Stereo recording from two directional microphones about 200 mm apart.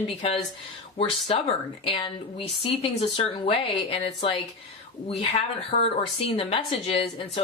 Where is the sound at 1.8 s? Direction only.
25° left (ahead or behind).